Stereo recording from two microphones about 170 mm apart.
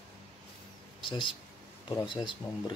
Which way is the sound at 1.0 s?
30° left (ahead or behind).